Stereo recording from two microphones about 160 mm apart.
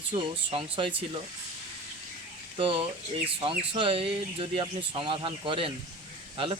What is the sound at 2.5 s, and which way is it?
Speech, 35° right (ahead or behind).